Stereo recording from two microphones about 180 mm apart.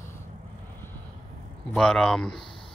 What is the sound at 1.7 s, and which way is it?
Speech, 5° left (ahead or behind).